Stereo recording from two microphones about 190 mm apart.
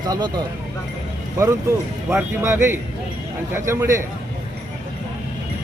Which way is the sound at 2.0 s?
15° right (ahead or behind).